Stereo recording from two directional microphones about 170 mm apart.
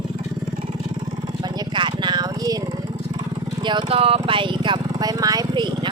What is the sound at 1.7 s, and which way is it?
Vehicle, 25° right (ahead or behind).